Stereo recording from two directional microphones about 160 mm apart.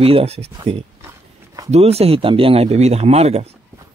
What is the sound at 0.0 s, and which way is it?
Speech, 40° right (ahead or behind).